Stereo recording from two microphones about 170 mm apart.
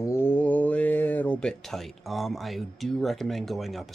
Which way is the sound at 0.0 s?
15° left (ahead or behind).